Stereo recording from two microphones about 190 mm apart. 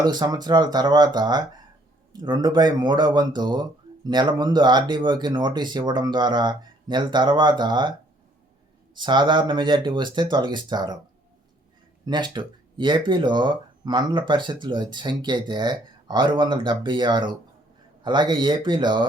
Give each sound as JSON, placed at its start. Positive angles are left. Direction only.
{"t": 0.0, "sound": "speech", "side_deg": -20}
{"t": 9.0, "sound": "speech", "side_deg": -25}
{"t": 12.0, "sound": "speech", "side_deg": -25}